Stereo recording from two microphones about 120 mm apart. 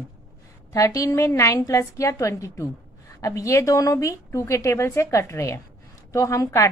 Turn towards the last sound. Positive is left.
turn(degrees=25)  # may be behind; listen again after turning